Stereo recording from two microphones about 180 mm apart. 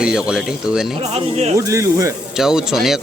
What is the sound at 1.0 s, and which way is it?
Speech, 35° right (ahead or behind).